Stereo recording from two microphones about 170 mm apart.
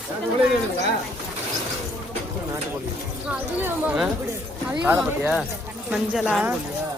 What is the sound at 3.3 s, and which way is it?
Speech, 10° right (ahead or behind).